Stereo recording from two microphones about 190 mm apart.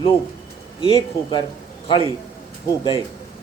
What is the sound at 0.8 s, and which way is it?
Speech, 25° left (ahead or behind).